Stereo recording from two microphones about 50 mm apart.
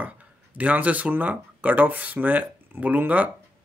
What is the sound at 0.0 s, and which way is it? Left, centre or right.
Speech, right.